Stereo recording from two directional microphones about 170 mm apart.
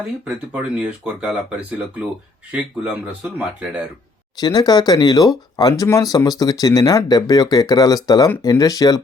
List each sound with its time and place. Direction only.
0.3 s speech: 5° right (ahead or behind)
4.4 s speech: 25° left (ahead or behind)